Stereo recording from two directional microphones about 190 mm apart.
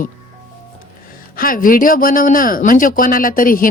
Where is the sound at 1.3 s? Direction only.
50° left (ahead or behind).